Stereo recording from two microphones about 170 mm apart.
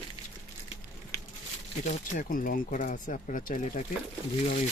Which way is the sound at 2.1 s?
55° left (ahead or behind).